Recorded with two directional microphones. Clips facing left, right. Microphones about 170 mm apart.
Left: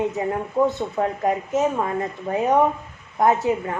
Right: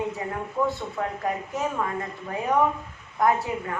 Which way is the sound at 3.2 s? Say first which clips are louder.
Left 4 dB; 25° left (ahead or behind).